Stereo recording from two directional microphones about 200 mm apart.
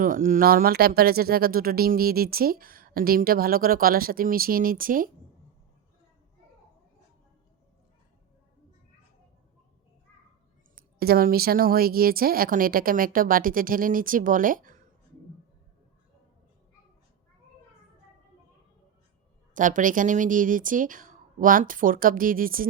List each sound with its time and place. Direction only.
0.0 s speech: 45° right (ahead or behind)
10.8 s speech: 50° right (ahead or behind)
19.5 s speech: 40° right (ahead or behind)